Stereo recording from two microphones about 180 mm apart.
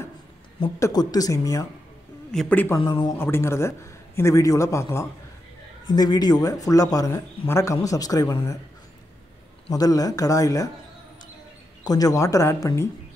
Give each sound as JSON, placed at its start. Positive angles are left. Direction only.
{"t": 0.7, "sound": "a man's voice", "side_deg": 20}
{"t": 2.8, "sound": "speech", "side_deg": 25}
{"t": 3.2, "sound": "a man's voice", "side_deg": 15}
{"t": 9.7, "sound": "speech", "side_deg": 20}
{"t": 11.8, "sound": "a man's voice", "side_deg": 20}